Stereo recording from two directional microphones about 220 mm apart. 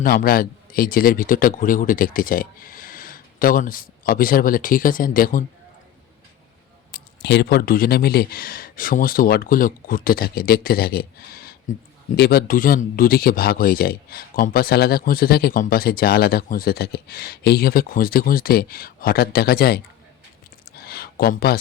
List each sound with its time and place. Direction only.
0.0 s a man's voice: 40° left (ahead or behind)
6.9 s speech: 50° left (ahead or behind)
20.7 s a sound: 45° left (ahead or behind)